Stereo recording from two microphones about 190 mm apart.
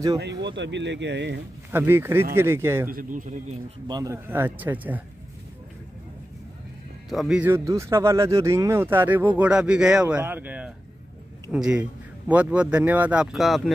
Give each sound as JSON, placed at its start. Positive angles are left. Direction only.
{"t": 0.2, "sound": "speech", "side_deg": -65}
{"t": 1.7, "sound": "speech", "side_deg": -10}
{"t": 2.9, "sound": "speech", "side_deg": -45}
{"t": 3.8, "sound": "speech", "side_deg": -20}
{"t": 7.1, "sound": "a man's voice", "side_deg": 0}